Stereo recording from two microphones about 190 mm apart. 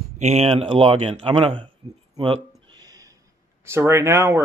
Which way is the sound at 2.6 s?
20° right (ahead or behind).